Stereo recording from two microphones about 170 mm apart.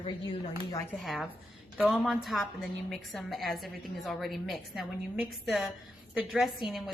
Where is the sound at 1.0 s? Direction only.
Centre (ahead or behind).